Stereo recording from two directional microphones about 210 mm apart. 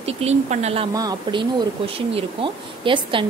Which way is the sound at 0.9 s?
20° right (ahead or behind).